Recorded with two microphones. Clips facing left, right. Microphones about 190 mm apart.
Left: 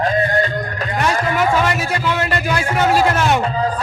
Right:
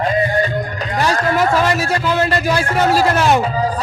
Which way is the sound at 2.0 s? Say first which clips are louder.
Right 3 dB; 35° right (ahead or behind).